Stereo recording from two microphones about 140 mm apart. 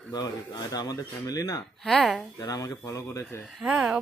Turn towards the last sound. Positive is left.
turn(degrees=-5)  # may be behind; listen again after turning